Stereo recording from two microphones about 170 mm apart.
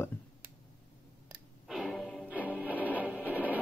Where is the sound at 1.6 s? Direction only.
Centre (ahead or behind).